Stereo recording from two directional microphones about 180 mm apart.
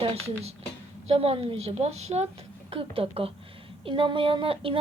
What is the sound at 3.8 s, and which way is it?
Child singing, 30° right (ahead or behind).